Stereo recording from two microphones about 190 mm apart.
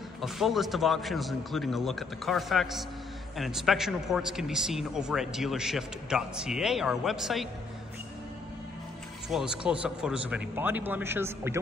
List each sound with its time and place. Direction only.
0.2 s a man's voice: centre (ahead or behind)
9.3 s a man's voice: 5° right (ahead or behind)